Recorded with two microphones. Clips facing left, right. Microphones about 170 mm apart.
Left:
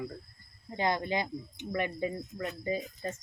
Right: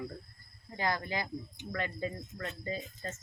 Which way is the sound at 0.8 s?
20° left (ahead or behind).